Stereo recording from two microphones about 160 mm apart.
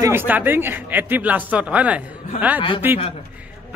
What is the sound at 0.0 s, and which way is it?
A man's voice, 10° right (ahead or behind).